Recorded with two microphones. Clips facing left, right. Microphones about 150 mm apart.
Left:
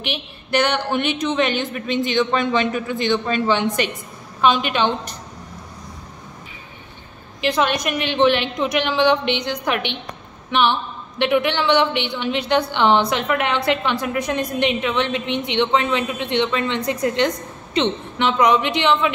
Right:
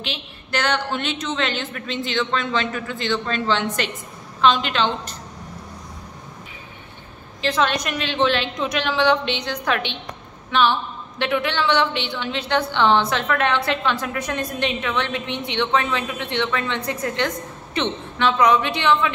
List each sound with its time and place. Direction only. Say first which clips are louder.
0.0 s a woman's voice: left 3 dB; 15° left (ahead or behind)
7.4 s a woman's voice: left 2 dB; 10° left (ahead or behind)